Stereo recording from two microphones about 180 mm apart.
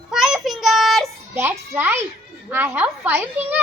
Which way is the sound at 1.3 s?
10° right (ahead or behind).